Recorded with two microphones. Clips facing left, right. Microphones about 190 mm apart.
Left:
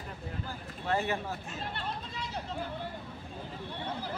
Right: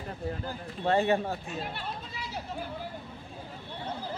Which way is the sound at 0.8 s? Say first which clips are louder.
Right 6 dB; 30° right (ahead or behind).